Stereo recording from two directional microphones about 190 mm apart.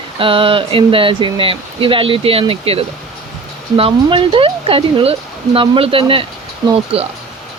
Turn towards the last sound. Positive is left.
turn(degrees=-30)  # may be behind; listen again after turning